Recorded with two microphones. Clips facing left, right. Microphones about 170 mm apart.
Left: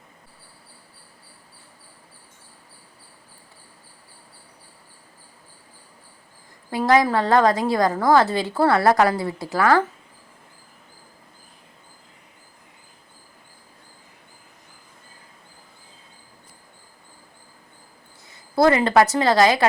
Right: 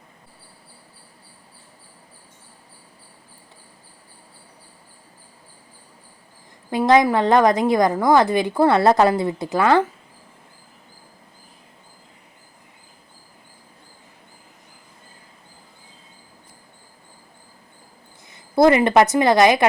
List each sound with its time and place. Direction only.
6.7 s a woman's voice: 20° right (ahead or behind)
18.3 s a woman's voice: 20° right (ahead or behind)